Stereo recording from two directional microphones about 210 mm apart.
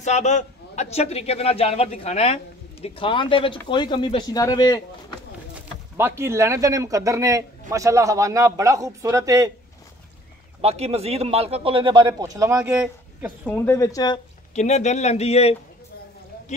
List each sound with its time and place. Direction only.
0.0 s a man's voice: 35° left (ahead or behind); by 4.8 s 15° left (ahead or behind)
5.5 s speech: 10° right (ahead or behind)
10.6 s speech: 30° right (ahead or behind); by 13.3 s 5° right (ahead or behind)
13.5 s speech: 10° left (ahead or behind)
14.5 s a man's voice: 35° left (ahead or behind)